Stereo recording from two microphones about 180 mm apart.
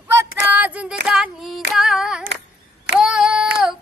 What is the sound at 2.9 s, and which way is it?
Child singing, 5° right (ahead or behind).